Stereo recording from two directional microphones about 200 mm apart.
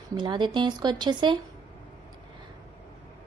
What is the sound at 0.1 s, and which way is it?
A woman's voice, 25° right (ahead or behind).